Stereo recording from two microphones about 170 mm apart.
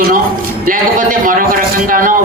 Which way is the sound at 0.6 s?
55° right (ahead or behind).